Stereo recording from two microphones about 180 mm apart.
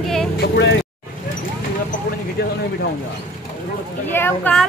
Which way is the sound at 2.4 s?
60° left (ahead or behind).